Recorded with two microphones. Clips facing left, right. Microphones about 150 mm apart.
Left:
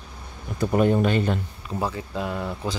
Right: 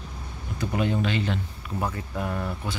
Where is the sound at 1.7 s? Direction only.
15° left (ahead or behind).